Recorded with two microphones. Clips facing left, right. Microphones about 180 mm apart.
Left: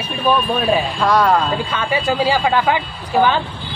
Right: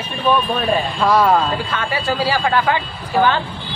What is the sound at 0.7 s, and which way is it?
Speech, 5° right (ahead or behind).